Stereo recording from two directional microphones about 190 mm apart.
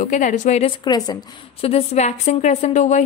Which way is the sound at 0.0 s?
40° left (ahead or behind).